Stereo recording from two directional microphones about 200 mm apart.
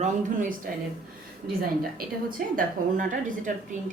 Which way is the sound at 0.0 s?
40° right (ahead or behind).